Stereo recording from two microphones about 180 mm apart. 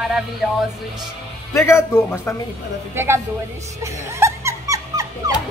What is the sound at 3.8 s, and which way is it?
Dog, 15° right (ahead or behind).